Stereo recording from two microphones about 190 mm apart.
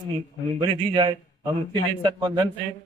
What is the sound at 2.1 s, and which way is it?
Speech, 25° right (ahead or behind).